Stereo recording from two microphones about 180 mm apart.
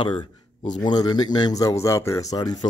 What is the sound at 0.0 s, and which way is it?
Speech, 25° left (ahead or behind).